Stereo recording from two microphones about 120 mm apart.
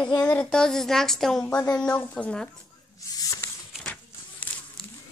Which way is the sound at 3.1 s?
30° left (ahead or behind).